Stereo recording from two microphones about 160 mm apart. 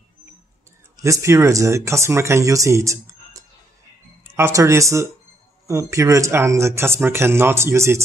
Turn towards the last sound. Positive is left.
turn(degrees=-15)  # may be behind; listen again after turning